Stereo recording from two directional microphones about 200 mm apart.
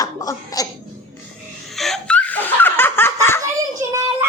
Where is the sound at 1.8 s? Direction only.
5° left (ahead or behind).